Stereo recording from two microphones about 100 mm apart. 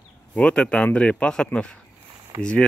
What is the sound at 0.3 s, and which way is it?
Speech, 10° left (ahead or behind).